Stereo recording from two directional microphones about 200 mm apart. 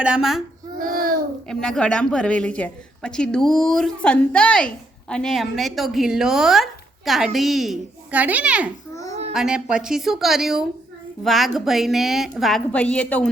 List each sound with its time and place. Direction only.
0.0 s a woman's voice: 5° right (ahead or behind)
0.8 s child singing: 45° right (ahead or behind)
1.5 s a woman's voice: 5° left (ahead or behind)